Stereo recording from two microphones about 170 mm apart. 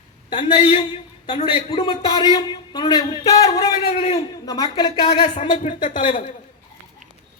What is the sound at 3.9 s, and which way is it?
Speech, 35° left (ahead or behind).